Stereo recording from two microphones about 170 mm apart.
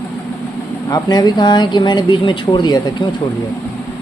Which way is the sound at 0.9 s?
25° left (ahead or behind).